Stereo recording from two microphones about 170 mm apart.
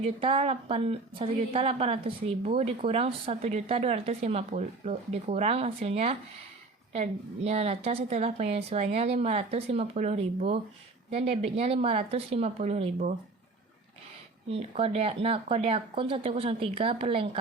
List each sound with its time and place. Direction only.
0.0 s a woman's voice: 35° right (ahead or behind)
14.4 s a woman's voice: 35° right (ahead or behind)